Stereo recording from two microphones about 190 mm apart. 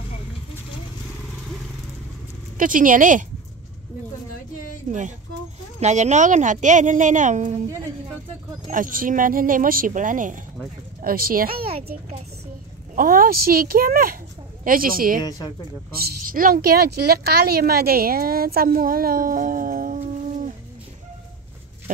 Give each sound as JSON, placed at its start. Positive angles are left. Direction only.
{"t": 2.5, "sound": "a woman's voice", "side_deg": -45}
{"t": 4.8, "sound": "a woman's voice", "side_deg": -40}
{"t": 8.6, "sound": "a woman's voice", "side_deg": -45}
{"t": 12.9, "sound": "a woman's voice", "side_deg": -50}
{"t": 15.2, "sound": "speech", "side_deg": 20}
{"t": 15.9, "sound": "a woman's voice", "side_deg": -50}